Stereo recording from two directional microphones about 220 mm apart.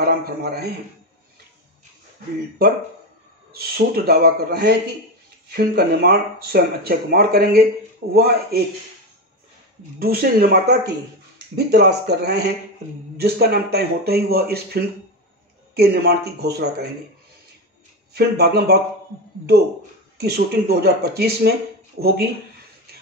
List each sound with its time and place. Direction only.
0.0 s a man's voice: 45° right (ahead or behind)
3.5 s speech: 45° right (ahead or behind)
9.9 s speech: 45° right (ahead or behind)
18.1 s speech: 45° right (ahead or behind)
20.2 s speech: 45° right (ahead or behind)